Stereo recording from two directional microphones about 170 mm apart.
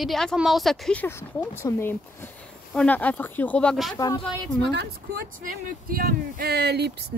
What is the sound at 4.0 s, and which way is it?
Speech, 25° left (ahead or behind).